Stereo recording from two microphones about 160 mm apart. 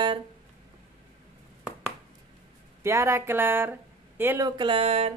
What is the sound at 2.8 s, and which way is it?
Speech, 20° right (ahead or behind).